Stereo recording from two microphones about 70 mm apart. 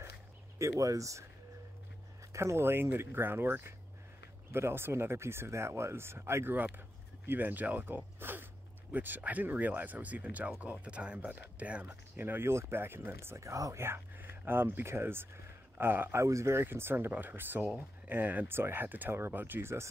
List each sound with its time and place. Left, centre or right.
0.6 s speech: right
2.3 s speech: right
7.2 s speech: right
13.7 s speech: right
16.2 s speech: right